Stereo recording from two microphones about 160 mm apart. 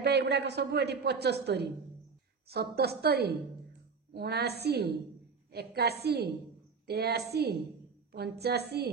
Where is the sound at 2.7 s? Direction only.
85° right.